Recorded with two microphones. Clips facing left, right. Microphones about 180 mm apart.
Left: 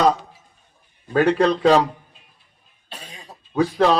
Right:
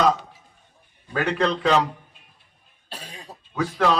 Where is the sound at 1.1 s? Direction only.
35° left (ahead or behind).